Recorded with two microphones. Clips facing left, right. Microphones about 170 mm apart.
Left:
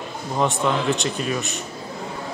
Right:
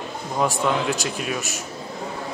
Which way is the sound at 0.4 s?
Centre (ahead or behind).